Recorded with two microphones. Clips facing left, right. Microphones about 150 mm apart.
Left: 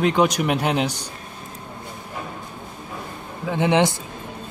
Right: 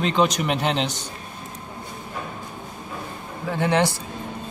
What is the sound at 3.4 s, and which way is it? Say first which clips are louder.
Speech: left 2 dB; 20° left (ahead or behind).